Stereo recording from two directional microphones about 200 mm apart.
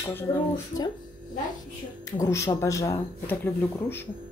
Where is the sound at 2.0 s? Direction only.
15° left (ahead or behind).